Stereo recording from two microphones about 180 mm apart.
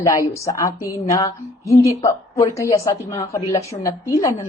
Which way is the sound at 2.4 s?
15° left (ahead or behind).